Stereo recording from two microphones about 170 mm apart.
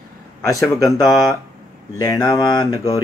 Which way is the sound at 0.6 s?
20° left (ahead or behind).